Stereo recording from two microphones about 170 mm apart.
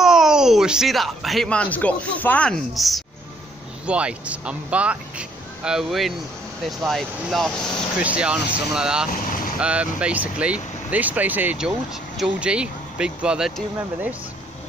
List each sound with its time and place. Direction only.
0.0 s speech: 5° right (ahead or behind)
9.1 s vehicle: 55° left (ahead or behind)
9.6 s speech: 5° right (ahead or behind)